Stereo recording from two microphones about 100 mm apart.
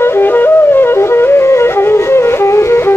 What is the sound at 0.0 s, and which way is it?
Flute, 20° left (ahead or behind).